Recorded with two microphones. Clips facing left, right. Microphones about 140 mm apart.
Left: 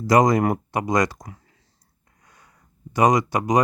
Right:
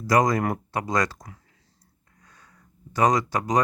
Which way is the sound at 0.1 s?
20° left (ahead or behind).